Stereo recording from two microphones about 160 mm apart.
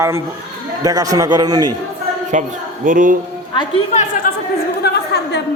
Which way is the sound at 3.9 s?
55° left (ahead or behind).